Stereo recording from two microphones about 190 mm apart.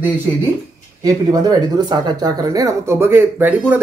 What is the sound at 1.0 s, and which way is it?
Speech, 20° right (ahead or behind).